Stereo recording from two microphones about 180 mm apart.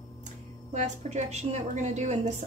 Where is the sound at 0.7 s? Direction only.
40° right (ahead or behind).